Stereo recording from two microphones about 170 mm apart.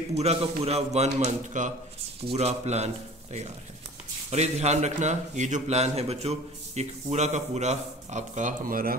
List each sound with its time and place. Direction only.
0.1 s a man's voice: 40° right (ahead or behind)
4.3 s a man's voice: 40° right (ahead or behind)